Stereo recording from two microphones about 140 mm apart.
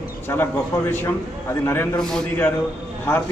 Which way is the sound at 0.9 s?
15° left (ahead or behind).